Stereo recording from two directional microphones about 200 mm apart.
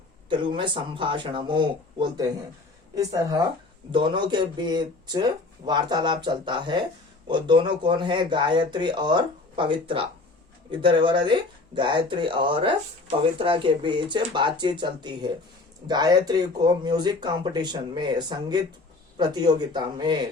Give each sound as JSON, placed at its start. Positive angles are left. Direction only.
{"t": 0.3, "sound": "speech", "side_deg": -25}